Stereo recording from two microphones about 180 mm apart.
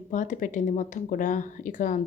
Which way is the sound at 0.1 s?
45° left (ahead or behind).